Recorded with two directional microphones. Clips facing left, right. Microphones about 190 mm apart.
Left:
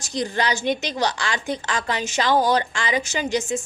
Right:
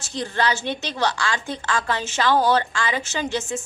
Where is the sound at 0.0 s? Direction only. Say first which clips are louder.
Even; 15° left (ahead or behind).